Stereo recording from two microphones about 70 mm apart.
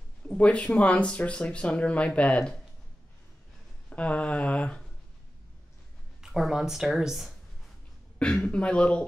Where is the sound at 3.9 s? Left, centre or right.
Centre.